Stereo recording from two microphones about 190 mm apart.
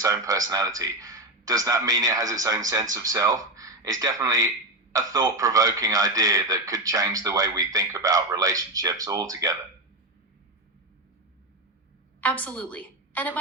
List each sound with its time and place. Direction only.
0.0 s a man's voice: 15° right (ahead or behind)
12.2 s a woman's voice: 10° left (ahead or behind)